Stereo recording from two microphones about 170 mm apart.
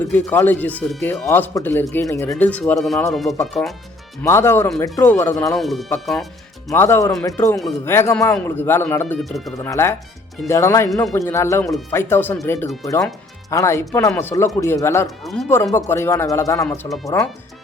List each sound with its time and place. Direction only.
0.1 s speech: 10° left (ahead or behind)
1.3 s speech: 10° left (ahead or behind)
4.2 s speech: 15° left (ahead or behind)
5.5 s speech: centre (ahead or behind)
6.7 s speech: 15° left (ahead or behind)
15.2 s speech: centre (ahead or behind)
15.9 s speech: 15° left (ahead or behind)
16.6 s speech: 5° left (ahead or behind)